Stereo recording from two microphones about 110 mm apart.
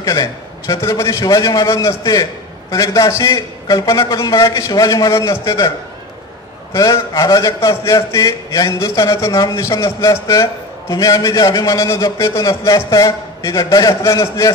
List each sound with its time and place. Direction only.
0.0 s a man's voice: 30° left (ahead or behind)
6.7 s a man's voice: 30° left (ahead or behind)